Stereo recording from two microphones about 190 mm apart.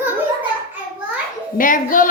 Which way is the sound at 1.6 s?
45° left (ahead or behind).